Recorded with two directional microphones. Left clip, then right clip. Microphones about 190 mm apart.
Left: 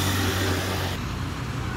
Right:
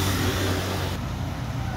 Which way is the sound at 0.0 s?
40° left (ahead or behind).